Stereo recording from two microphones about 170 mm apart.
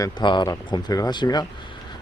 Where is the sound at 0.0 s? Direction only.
25° left (ahead or behind).